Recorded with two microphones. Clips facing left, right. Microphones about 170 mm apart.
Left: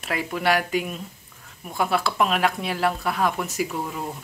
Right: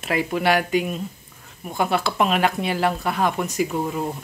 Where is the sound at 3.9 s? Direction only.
5° right (ahead or behind).